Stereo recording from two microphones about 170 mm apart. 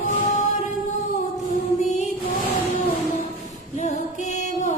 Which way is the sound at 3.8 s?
45° left (ahead or behind).